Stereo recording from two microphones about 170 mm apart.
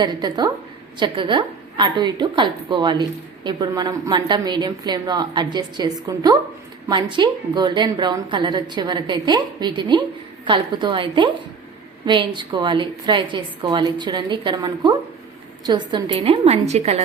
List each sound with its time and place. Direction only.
0.0 s a woman's voice: 25° right (ahead or behind)